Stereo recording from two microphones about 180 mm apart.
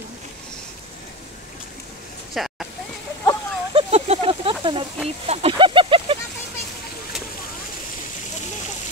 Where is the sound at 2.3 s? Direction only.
Centre (ahead or behind).